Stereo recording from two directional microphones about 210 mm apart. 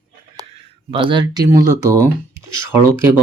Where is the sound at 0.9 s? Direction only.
20° right (ahead or behind).